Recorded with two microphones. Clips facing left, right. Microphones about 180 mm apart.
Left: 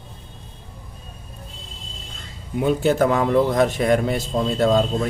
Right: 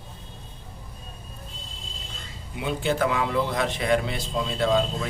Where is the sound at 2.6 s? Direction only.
45° left (ahead or behind).